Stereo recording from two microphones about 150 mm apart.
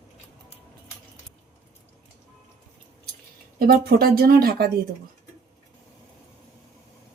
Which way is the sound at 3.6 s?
85° right.